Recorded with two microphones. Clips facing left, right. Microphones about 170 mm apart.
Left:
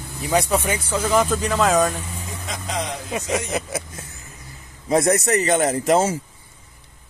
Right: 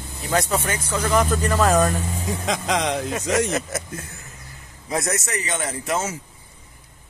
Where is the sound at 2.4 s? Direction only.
90° right.